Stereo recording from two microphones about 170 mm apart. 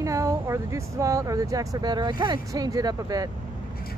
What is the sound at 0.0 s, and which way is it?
Speech, 20° right (ahead or behind).